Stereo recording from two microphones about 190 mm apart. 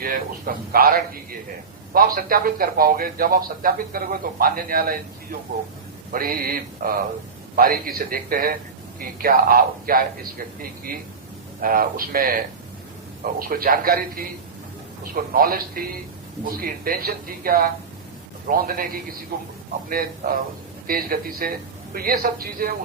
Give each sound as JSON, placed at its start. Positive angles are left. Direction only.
{"t": 0.0, "sound": "a man's voice", "side_deg": -50}
{"t": 13.5, "sound": "a man's voice", "side_deg": -50}